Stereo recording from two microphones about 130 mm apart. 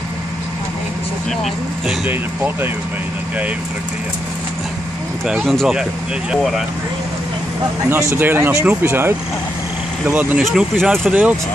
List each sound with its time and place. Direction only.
2.0 s speech: 15° right (ahead or behind)
5.2 s speech: centre (ahead or behind)
8.2 s speech: 15° right (ahead or behind)
10.4 s speech: centre (ahead or behind)